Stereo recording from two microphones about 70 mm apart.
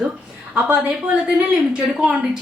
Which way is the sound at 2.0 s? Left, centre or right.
Centre.